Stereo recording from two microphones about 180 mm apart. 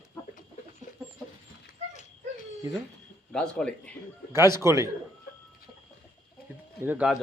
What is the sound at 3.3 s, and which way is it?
Speech, 5° left (ahead or behind).